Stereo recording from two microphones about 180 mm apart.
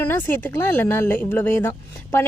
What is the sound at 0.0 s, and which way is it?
A woman's voice, 10° left (ahead or behind).